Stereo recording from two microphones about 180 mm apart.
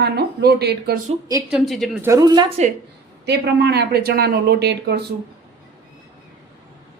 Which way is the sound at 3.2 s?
65° right (ahead or behind).